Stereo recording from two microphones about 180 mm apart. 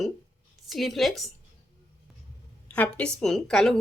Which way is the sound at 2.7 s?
5° left (ahead or behind).